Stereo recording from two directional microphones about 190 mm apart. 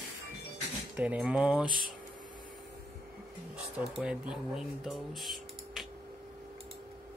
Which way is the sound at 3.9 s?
5° right (ahead or behind).